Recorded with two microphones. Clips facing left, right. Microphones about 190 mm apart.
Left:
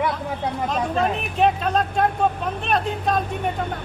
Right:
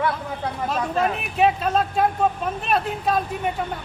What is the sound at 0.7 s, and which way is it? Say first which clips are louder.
Speech: even; 5° right (ahead or behind).